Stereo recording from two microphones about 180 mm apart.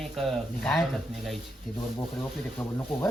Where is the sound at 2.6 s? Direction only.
10° left (ahead or behind).